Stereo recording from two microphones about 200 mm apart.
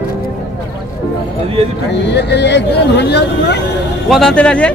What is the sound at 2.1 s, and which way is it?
Speech, 60° left (ahead or behind).